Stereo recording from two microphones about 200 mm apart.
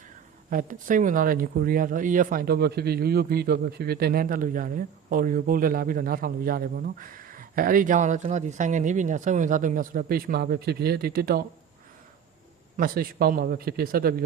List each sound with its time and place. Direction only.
0.5 s speech: 40° right (ahead or behind)
12.7 s speech: 45° right (ahead or behind)